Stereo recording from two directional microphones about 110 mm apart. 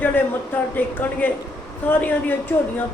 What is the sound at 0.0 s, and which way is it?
Speech, 15° left (ahead or behind).